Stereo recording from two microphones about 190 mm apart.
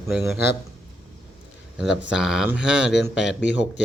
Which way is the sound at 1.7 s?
5° right (ahead or behind).